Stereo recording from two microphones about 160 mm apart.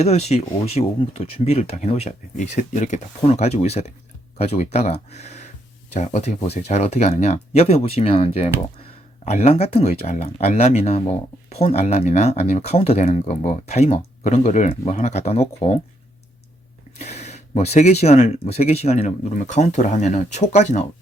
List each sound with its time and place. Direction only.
0.0 s speech: 40° left (ahead or behind)
17.0 s speech: 45° left (ahead or behind)